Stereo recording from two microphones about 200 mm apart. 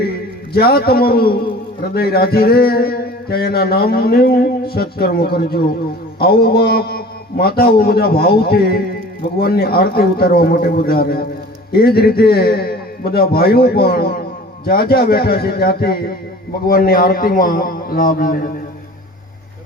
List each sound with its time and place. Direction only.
0.5 s a man's voice: 50° left (ahead or behind)